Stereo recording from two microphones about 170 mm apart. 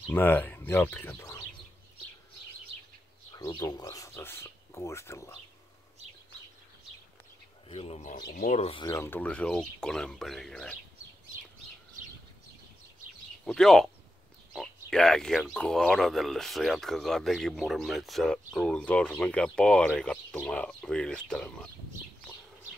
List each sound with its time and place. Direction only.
0.1 s speech: 10° left (ahead or behind)
3.3 s speech: 20° left (ahead or behind)
7.6 s speech: 35° left (ahead or behind)
8.2 s speech: 70° left (ahead or behind)
8.5 s speech: 40° left (ahead or behind)
8.7 s speech: 20° left (ahead or behind)
13.5 s speech: centre (ahead or behind)